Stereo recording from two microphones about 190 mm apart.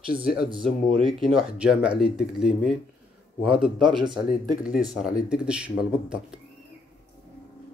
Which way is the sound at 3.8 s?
25° right (ahead or behind).